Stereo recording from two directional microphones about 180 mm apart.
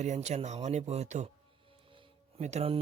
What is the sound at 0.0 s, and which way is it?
Speech, 40° right (ahead or behind).